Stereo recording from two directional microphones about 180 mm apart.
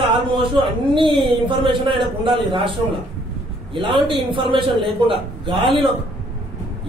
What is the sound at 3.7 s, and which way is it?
A man's voice, 25° right (ahead or behind).